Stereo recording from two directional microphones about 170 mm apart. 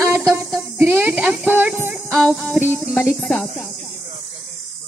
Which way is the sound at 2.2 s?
Centre (ahead or behind).